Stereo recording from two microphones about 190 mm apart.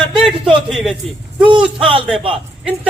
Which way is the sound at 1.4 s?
25° right (ahead or behind).